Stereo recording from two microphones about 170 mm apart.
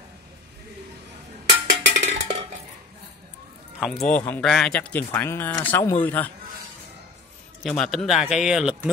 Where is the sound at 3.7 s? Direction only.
Centre (ahead or behind).